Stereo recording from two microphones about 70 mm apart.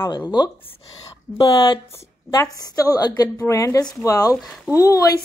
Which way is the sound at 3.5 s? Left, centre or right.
Left.